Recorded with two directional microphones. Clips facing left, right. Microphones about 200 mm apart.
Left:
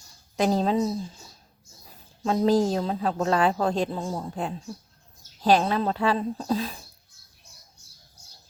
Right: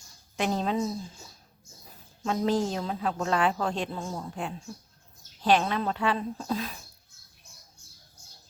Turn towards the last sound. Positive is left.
turn(degrees=30)  # may be behind; listen again after turning